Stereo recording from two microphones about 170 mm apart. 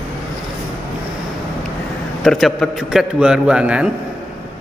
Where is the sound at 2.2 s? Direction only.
Centre (ahead or behind).